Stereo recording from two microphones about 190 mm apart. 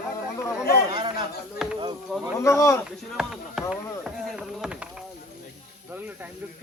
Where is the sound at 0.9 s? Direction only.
25° right (ahead or behind).